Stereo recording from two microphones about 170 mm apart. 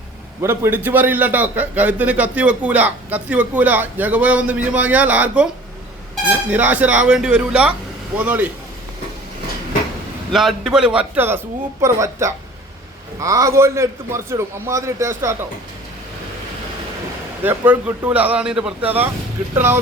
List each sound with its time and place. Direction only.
0.4 s a man's voice: 15° right (ahead or behind)
6.5 s a man's voice: 10° right (ahead or behind)
10.3 s a man's voice: centre (ahead or behind); by 15.4 s 15° right (ahead or behind)
17.4 s a man's voice: 15° right (ahead or behind)